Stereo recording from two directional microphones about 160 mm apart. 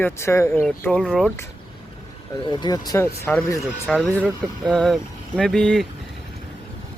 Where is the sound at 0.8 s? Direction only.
5° left (ahead or behind).